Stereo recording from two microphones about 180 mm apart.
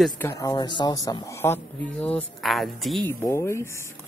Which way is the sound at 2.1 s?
Centre (ahead or behind).